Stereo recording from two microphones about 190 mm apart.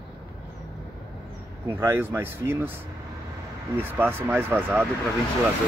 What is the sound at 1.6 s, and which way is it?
Speech, 15° right (ahead or behind).